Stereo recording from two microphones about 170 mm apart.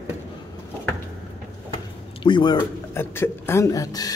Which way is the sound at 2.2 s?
25° left (ahead or behind).